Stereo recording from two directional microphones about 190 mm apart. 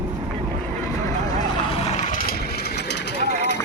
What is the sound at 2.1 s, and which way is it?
Vehicle, 50° left (ahead or behind).